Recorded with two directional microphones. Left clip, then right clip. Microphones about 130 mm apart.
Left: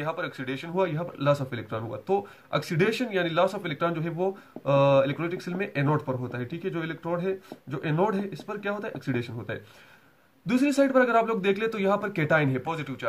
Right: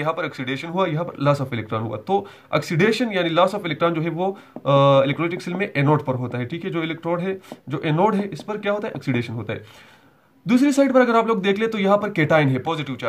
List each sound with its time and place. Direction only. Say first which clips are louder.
0.0 s speech: right 7 dB; 25° right (ahead or behind)